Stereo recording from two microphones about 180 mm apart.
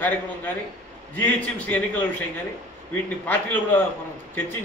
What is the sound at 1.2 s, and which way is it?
Speech, 10° left (ahead or behind).